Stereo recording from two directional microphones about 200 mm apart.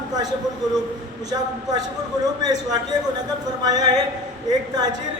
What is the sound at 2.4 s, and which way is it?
A woman's voice, 20° right (ahead or behind).